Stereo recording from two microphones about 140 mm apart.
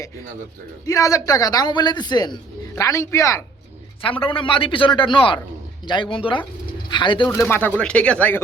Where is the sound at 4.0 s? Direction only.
40° left (ahead or behind).